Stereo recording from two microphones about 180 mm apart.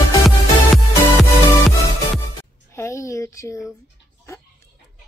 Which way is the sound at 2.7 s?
15° left (ahead or behind).